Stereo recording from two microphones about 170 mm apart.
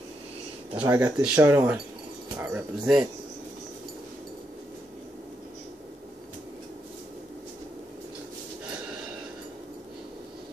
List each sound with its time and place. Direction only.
0.8 s speech: 10° right (ahead or behind)